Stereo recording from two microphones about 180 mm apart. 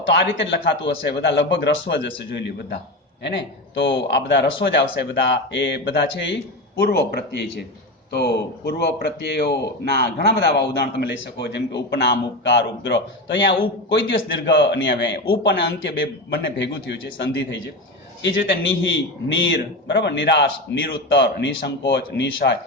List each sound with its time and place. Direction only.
0.1 s a man's voice: 70° left (ahead or behind)
6.7 s a man's voice: 65° left (ahead or behind); by 17.0 s 80° left
17.2 s a man's voice: 90° left
19.5 s a man's voice: 75° left (ahead or behind)